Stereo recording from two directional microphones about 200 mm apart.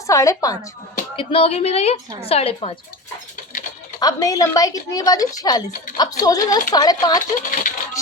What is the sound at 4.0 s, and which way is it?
A woman's voice, 15° left (ahead or behind).